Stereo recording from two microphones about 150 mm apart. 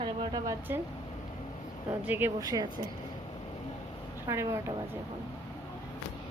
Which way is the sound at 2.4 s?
25° right (ahead or behind).